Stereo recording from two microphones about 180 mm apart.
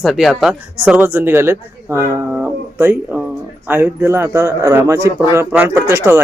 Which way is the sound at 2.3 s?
10° right (ahead or behind).